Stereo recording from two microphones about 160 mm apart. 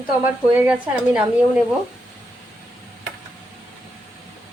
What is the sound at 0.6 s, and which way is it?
Speech, 10° right (ahead or behind).